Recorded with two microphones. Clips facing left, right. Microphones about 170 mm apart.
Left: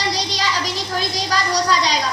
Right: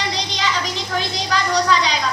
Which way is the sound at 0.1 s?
35° left (ahead or behind).